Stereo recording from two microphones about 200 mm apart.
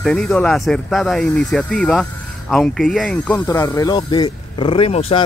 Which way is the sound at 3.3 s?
20° left (ahead or behind).